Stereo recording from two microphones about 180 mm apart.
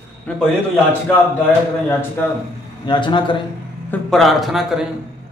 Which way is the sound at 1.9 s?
10° left (ahead or behind).